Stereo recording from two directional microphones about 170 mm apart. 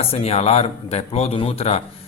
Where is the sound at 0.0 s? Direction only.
35° left (ahead or behind).